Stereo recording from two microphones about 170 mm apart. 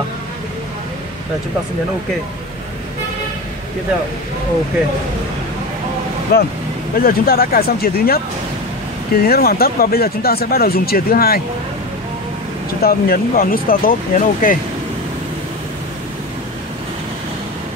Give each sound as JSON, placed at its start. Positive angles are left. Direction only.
{"t": 6.3, "sound": "speech", "side_deg": 65}
{"t": 12.8, "sound": "speech", "side_deg": 60}